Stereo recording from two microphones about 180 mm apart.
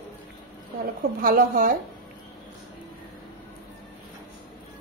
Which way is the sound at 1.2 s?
50° right (ahead or behind).